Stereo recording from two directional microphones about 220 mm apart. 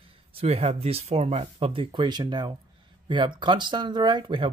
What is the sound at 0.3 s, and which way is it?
Speech, 25° right (ahead or behind).